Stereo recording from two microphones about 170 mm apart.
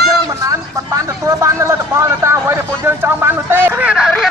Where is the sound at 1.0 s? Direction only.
20° right (ahead or behind).